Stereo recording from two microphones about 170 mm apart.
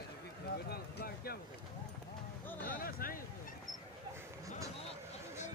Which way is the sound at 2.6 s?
60° left (ahead or behind).